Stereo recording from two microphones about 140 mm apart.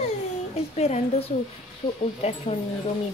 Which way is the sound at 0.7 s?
50° left (ahead or behind).